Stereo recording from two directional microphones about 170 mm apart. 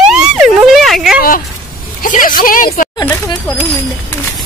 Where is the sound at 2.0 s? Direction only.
55° left (ahead or behind).